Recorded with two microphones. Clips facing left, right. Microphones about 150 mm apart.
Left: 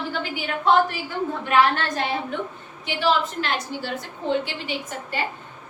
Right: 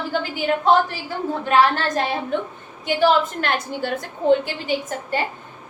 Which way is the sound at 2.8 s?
45° right (ahead or behind).